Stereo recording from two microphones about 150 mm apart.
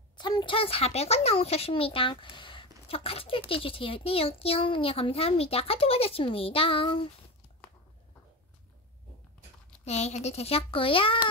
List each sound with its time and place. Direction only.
0.2 s speech: 30° left (ahead or behind)
9.8 s a child's voice: 45° left (ahead or behind)